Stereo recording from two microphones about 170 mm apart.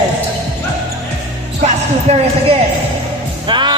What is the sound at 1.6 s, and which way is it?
Speech, 35° right (ahead or behind).